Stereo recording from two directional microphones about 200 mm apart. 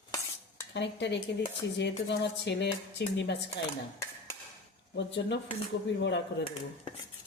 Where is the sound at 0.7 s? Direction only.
60° left (ahead or behind).